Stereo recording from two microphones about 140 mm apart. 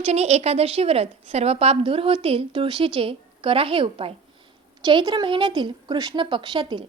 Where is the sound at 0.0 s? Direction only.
50° right (ahead or behind).